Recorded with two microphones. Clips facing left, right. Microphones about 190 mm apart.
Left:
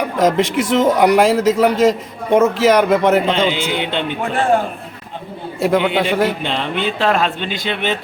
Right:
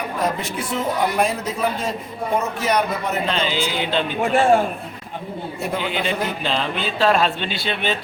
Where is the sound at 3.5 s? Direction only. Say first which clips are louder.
Left 2 dB; 20° left (ahead or behind).